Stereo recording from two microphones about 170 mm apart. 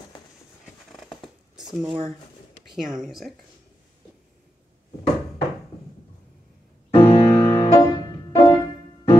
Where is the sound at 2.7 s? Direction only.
Centre (ahead or behind).